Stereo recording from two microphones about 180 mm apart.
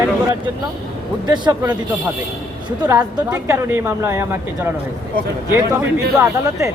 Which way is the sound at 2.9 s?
15° right (ahead or behind).